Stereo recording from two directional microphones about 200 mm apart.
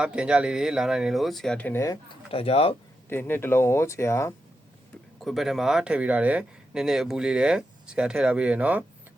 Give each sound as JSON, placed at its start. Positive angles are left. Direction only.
{"t": 0.0, "sound": "speech", "side_deg": -5}
{"t": 2.3, "sound": "speech", "side_deg": 30}
{"t": 3.1, "sound": "speech", "side_deg": 10}
{"t": 5.2, "sound": "speech", "side_deg": 0}